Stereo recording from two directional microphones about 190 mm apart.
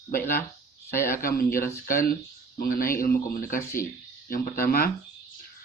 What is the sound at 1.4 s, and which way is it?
Speech, 50° left (ahead or behind).